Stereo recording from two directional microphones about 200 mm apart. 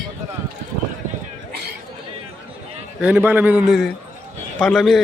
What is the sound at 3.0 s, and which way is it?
A man's voice, 10° right (ahead or behind).